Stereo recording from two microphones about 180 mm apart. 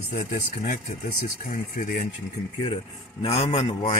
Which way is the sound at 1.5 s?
50° left (ahead or behind).